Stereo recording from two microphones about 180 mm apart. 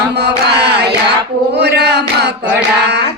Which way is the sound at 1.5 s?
65° right (ahead or behind).